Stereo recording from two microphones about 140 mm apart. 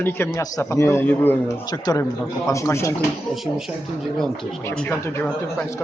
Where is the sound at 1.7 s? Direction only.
30° left (ahead or behind).